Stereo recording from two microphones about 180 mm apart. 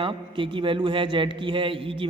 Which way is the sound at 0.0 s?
30° right (ahead or behind).